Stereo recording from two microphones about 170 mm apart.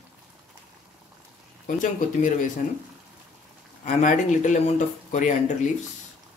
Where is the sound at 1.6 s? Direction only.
50° left (ahead or behind).